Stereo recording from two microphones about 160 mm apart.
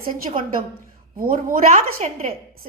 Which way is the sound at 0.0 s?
60° right (ahead or behind).